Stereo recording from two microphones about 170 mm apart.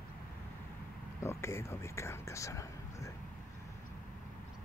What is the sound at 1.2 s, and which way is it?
Speech, 15° left (ahead or behind).